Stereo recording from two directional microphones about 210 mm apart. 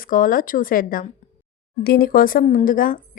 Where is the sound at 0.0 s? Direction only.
40° left (ahead or behind).